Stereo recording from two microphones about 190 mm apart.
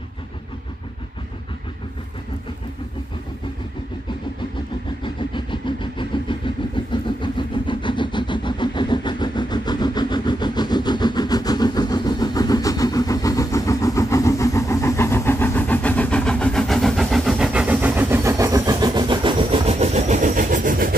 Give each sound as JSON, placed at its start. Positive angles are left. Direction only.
{"t": 5.0, "sound": "vehicle", "side_deg": 25}